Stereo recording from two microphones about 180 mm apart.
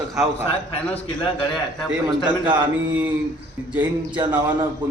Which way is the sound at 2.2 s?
25° right (ahead or behind).